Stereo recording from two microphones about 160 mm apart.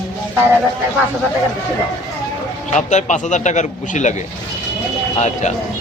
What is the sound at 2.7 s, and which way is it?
A man's voice, 50° left (ahead or behind).